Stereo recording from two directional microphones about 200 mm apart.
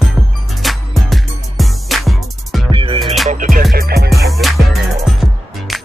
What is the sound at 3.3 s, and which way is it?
Music, 45° right (ahead or behind).